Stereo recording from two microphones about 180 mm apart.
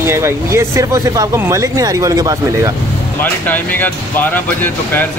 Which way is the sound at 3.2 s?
10° left (ahead or behind).